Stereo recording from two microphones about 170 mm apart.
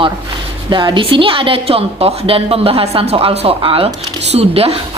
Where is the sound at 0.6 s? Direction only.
25° right (ahead or behind).